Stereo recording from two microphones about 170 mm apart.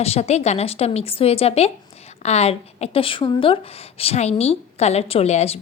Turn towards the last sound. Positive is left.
turn(degrees=40)  # may be behind; listen again after turning